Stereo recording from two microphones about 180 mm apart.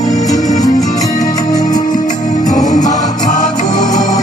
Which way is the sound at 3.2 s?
45° left (ahead or behind).